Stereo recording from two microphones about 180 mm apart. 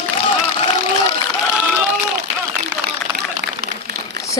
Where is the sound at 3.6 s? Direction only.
60° right (ahead or behind).